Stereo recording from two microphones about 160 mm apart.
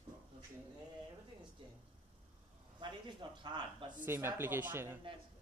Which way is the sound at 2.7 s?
30° right (ahead or behind).